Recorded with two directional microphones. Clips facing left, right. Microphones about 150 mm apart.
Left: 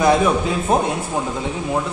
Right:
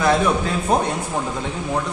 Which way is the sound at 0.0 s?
10° left (ahead or behind).